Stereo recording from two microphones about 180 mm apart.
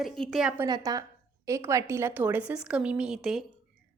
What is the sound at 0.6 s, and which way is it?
A woman's voice, 20° right (ahead or behind).